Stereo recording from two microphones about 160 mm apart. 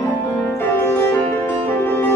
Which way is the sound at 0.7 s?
15° left (ahead or behind).